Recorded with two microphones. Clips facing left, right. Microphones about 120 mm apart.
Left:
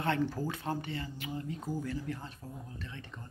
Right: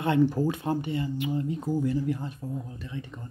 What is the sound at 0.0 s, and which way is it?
Speech, 15° right (ahead or behind).